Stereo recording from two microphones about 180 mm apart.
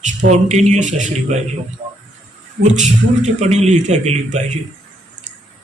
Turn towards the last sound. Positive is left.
turn(degrees=-40)  # may be behind; listen again after turning